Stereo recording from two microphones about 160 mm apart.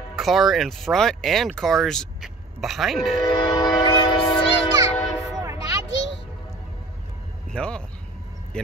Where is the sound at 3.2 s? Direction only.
30° left (ahead or behind).